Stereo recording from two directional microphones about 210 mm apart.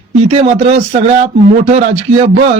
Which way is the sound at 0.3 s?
30° right (ahead or behind).